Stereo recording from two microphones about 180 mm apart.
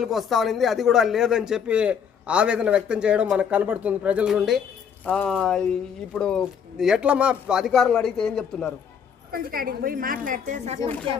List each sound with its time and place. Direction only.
0.0 s a man's voice: centre (ahead or behind)
9.3 s a woman's voice: 55° right (ahead or behind)